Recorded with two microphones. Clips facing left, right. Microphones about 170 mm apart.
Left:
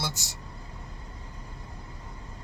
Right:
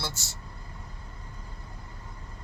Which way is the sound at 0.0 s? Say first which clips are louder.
Left 2 dB; 15° left (ahead or behind).